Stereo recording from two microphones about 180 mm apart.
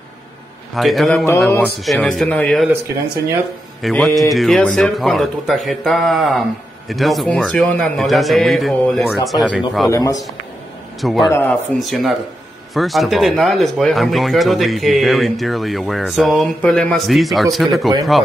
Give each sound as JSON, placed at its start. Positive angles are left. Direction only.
{"t": 0.7, "sound": "speech", "side_deg": 0}
{"t": 3.8, "sound": "speech", "side_deg": 0}
{"t": 9.8, "sound": "a man's voice", "side_deg": 20}
{"t": 11.0, "sound": "speech", "side_deg": 0}